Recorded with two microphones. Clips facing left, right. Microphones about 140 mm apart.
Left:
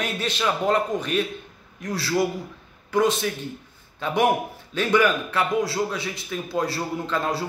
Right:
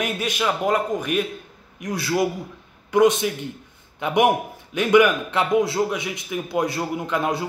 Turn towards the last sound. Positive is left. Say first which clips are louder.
# right 2 dB
turn(degrees=-15)  # may be behind; listen again after turning